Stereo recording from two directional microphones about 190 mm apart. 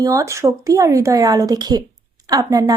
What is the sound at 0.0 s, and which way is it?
A woman's voice, 15° right (ahead or behind).